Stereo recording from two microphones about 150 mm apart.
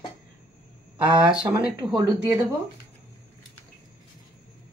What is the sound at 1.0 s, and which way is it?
Speech, 35° right (ahead or behind).